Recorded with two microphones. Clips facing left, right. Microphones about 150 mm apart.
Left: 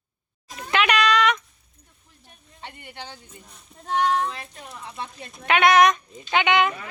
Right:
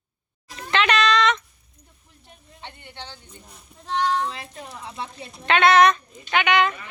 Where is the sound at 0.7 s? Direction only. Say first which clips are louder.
Even; 10° left (ahead or behind).